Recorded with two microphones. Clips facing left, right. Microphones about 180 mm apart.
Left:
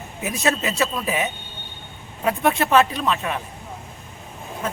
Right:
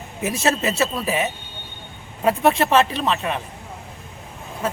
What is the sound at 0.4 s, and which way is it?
Speech, 30° right (ahead or behind).